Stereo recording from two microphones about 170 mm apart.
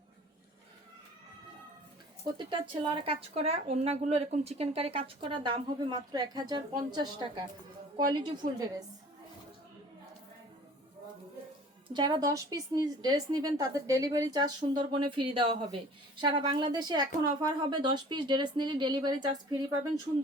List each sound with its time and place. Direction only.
2.5 s a woman's voice: 30° right (ahead or behind)
11.9 s a woman's voice: 25° right (ahead or behind)